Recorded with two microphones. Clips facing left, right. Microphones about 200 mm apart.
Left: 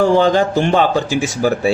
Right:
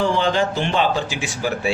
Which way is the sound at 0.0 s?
45° left (ahead or behind).